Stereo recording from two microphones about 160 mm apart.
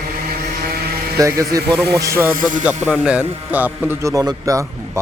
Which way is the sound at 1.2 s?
20° right (ahead or behind).